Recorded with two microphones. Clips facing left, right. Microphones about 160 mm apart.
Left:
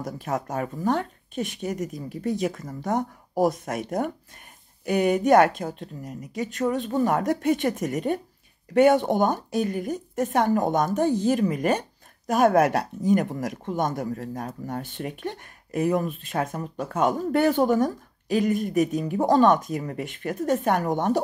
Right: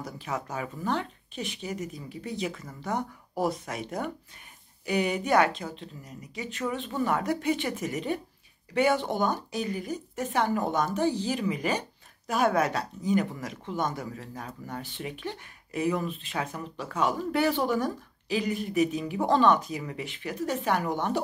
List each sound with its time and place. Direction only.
0.0 s speech: 45° left (ahead or behind)